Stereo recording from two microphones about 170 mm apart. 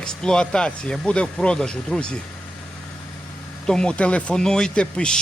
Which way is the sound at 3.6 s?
5° left (ahead or behind).